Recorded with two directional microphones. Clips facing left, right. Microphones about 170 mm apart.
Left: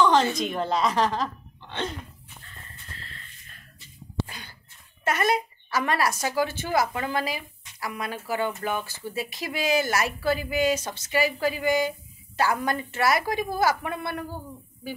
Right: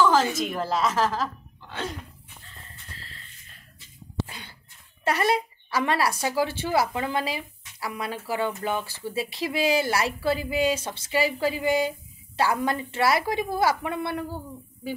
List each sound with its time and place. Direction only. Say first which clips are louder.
0.0 s a woman's voice: even; 5° right (ahead or behind)
4.3 s a sound: even; 25° right (ahead or behind)
5.0 s speech: right 1 dB; 30° right (ahead or behind)